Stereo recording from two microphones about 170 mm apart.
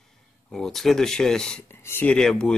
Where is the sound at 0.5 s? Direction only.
Centre (ahead or behind).